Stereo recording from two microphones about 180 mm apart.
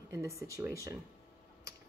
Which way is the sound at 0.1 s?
15° right (ahead or behind).